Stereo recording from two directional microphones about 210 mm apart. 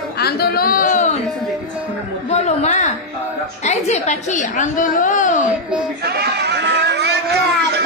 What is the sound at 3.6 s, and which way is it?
A woman's voice, 30° left (ahead or behind).